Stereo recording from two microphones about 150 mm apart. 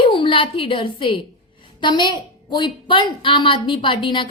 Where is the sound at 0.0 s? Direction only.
35° left (ahead or behind).